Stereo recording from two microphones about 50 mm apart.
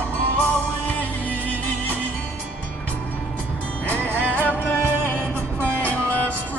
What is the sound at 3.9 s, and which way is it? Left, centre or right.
Music, left.